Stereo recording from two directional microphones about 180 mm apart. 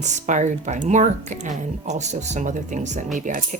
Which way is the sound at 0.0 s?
40° right (ahead or behind).